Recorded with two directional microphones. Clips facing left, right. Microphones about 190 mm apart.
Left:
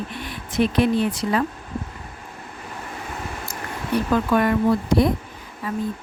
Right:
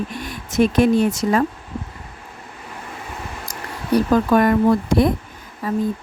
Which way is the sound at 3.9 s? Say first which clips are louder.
Right 4 dB; 40° right (ahead or behind).